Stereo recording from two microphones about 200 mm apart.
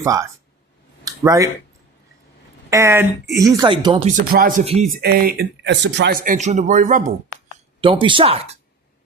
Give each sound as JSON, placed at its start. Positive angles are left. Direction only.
{"t": 0.0, "sound": "speech", "side_deg": -15}
{"t": 1.0, "sound": "a sound", "side_deg": -15}
{"t": 2.6, "sound": "speech", "side_deg": -15}
{"t": 4.1, "sound": "speech", "side_deg": -45}
{"t": 4.6, "sound": "speech", "side_deg": -30}
{"t": 4.9, "sound": "speech", "side_deg": -50}
{"t": 7.8, "sound": "speech", "side_deg": -25}